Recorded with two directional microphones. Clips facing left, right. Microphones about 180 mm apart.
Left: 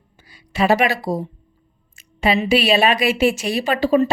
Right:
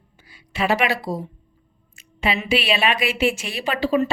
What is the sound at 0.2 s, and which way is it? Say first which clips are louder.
A woman's voice: left 5 dB; 40° left (ahead or behind).